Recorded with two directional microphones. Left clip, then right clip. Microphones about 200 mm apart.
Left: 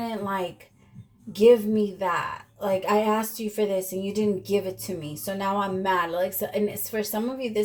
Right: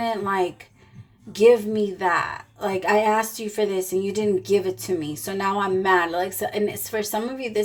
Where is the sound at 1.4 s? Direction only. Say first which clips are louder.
Right 1 dB; 45° right (ahead or behind).